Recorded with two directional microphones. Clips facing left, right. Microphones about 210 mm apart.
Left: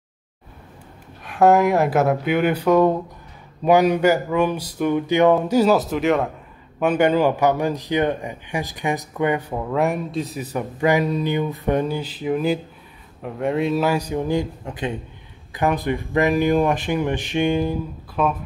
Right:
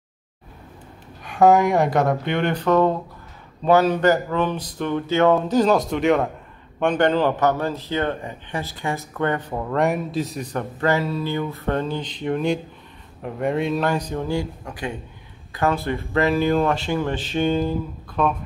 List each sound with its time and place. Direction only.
1.2 s speech: centre (ahead or behind)